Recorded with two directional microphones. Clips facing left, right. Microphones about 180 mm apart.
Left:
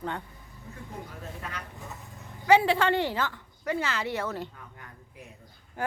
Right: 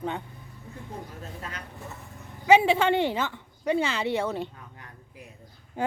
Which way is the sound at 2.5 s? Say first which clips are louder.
Right 2 dB; 20° right (ahead or behind).